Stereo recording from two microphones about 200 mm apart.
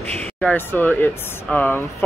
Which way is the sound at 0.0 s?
30° right (ahead or behind).